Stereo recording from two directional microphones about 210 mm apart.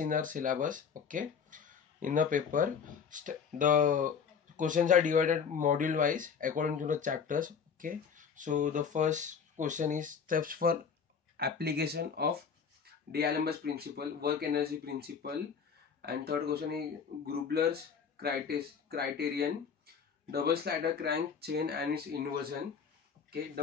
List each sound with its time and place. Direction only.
0.0 s speech: 40° right (ahead or behind)